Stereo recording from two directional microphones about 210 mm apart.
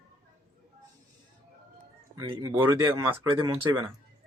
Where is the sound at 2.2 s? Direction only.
25° right (ahead or behind).